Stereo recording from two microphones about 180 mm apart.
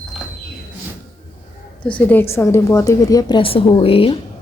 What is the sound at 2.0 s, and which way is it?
A woman's voice, 10° left (ahead or behind).